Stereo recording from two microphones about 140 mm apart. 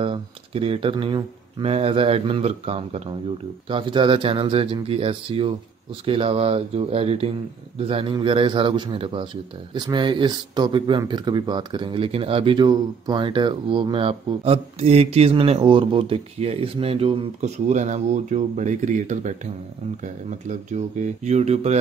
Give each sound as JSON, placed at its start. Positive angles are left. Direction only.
{"t": 0.0, "sound": "speech", "side_deg": -40}
{"t": 17.4, "sound": "speech", "side_deg": -60}